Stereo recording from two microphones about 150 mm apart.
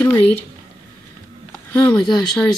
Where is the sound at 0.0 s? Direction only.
15° left (ahead or behind).